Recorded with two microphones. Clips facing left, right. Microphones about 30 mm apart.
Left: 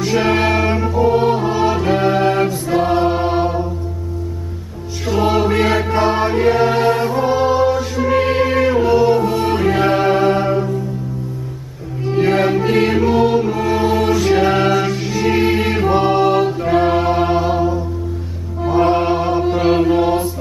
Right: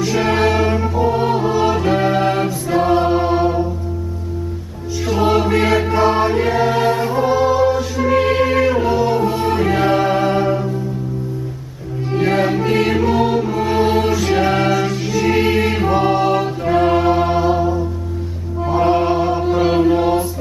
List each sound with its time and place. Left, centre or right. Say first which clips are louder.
0.0 s music: even; centre
5.0 s music: even; centre
6.5 s choir: left 1 dB; centre
7.2 s music: even; centre
12.1 s music: left 2 dB; centre
13.7 s music: right 2 dB; centre
14.0 s choir: left 2 dB; centre
15.9 s music: left 2 dB; centre
18.6 s chant: left 1 dB; centre